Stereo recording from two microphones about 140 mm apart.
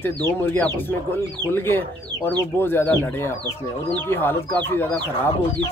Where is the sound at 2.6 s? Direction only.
15° left (ahead or behind).